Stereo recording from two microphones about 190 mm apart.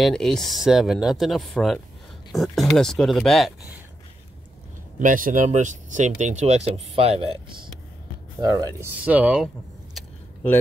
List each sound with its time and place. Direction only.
0.0 s speech: centre (ahead or behind)
4.9 s speech: 45° right (ahead or behind)
8.4 s speech: 20° right (ahead or behind)
9.0 s speech: 5° right (ahead or behind)
9.9 s a sound: 10° left (ahead or behind)